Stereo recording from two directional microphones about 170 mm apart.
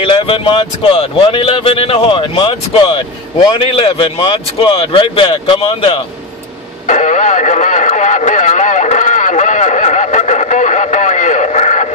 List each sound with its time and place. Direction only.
0.0 s speech: 30° left (ahead or behind)
6.9 s radio: 45° left (ahead or behind)